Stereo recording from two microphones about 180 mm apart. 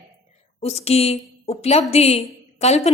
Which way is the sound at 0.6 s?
35° left (ahead or behind).